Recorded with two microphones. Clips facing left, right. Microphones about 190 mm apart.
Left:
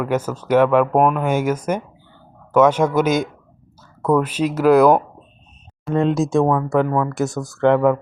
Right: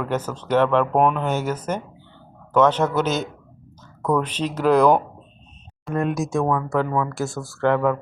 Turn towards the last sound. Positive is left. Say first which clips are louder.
# left 5 dB
turn(degrees=20)  # may be behind; listen again after turning